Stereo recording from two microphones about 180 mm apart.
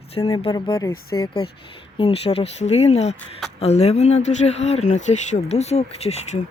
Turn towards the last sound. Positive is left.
turn(degrees=35)  # may be behind; listen again after turning